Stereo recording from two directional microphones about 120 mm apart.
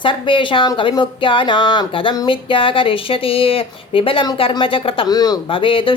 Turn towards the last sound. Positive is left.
turn(degrees=45)  # may be behind; listen again after turning